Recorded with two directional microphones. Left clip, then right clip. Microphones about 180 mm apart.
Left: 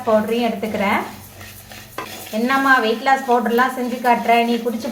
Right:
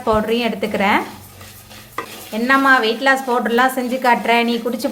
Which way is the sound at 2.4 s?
40° right (ahead or behind).